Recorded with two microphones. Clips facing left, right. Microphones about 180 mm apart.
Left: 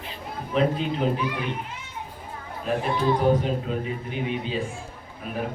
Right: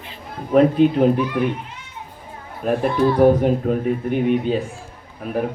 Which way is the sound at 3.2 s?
55° right (ahead or behind).